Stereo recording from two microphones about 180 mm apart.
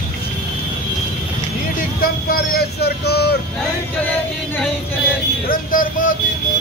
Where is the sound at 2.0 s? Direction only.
55° left (ahead or behind).